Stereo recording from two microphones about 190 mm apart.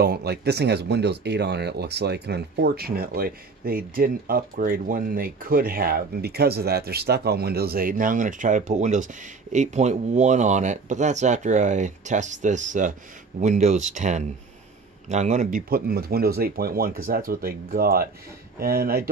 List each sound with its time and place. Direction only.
0.0 s speech: 55° right (ahead or behind)